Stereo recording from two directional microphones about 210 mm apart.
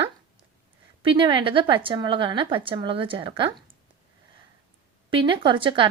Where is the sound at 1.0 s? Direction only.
25° right (ahead or behind).